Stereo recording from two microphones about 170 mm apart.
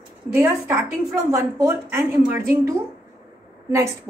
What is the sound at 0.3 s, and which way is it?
A woman's voice, 15° right (ahead or behind).